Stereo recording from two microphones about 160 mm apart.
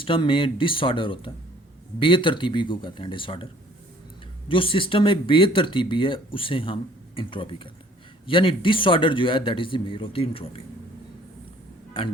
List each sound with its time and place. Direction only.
0.0 s speech: 35° left (ahead or behind)